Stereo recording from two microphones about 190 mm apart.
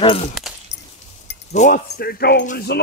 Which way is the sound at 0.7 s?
65° left (ahead or behind).